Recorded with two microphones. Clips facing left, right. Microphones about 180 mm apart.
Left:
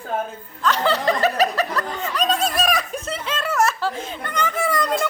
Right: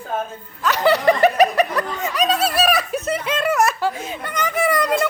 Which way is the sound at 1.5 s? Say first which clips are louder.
Right 4 dB; 10° right (ahead or behind).